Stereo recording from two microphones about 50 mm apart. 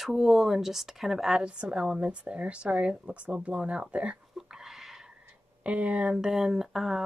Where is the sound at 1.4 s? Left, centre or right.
Centre.